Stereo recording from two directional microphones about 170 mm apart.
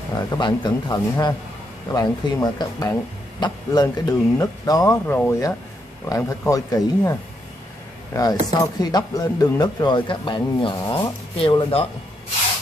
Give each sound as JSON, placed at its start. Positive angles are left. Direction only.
{"t": 0.3, "sound": "speech", "side_deg": 25}